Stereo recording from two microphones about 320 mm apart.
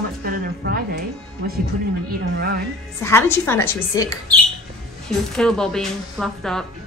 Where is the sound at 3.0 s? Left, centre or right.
Centre.